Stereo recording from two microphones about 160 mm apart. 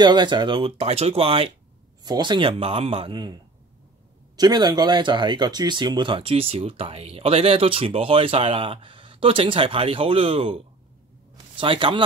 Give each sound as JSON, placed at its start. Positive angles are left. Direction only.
{"t": 0.0, "sound": "a man's voice", "side_deg": -30}